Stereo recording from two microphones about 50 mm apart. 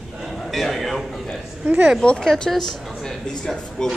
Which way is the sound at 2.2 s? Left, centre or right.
Centre.